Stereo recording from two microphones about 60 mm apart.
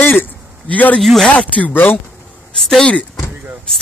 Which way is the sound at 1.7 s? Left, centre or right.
Left.